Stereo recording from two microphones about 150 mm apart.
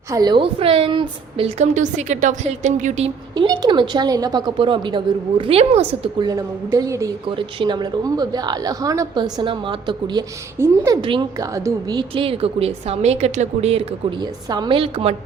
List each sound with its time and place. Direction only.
0.1 s a woman's voice: 25° right (ahead or behind); by 3.1 s 55° right (ahead or behind)
3.3 s a woman's voice: 30° right (ahead or behind)
6.1 s a woman's voice: 25° right (ahead or behind)
7.3 s a woman's voice: 35° right (ahead or behind)
10.6 s speech: 15° right (ahead or behind)
11.0 s a woman's voice: 30° right (ahead or behind)
14.2 s a woman's voice: 30° right (ahead or behind)